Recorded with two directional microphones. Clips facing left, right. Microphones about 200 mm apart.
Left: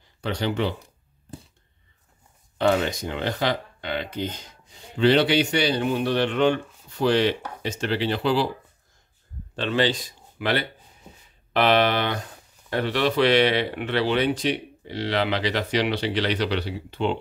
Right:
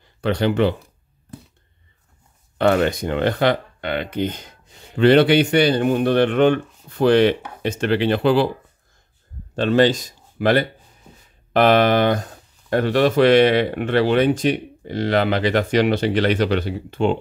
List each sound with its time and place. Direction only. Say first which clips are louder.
0.2 s speech: right 7 dB; 60° right (ahead or behind)
2.5 s speech: right 4 dB; 60° right (ahead or behind)
9.6 s speech: right 7 dB; 45° right (ahead or behind)